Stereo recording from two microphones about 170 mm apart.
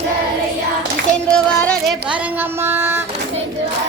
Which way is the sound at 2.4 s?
10° right (ahead or behind).